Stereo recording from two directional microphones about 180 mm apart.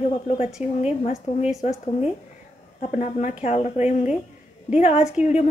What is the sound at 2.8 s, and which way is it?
A woman's voice, 40° left (ahead or behind).